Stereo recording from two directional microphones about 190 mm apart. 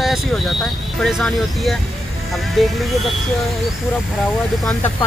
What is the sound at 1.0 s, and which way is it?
Speech, centre (ahead or behind).